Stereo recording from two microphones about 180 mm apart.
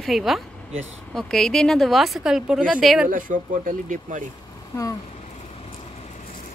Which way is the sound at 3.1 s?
45° right (ahead or behind).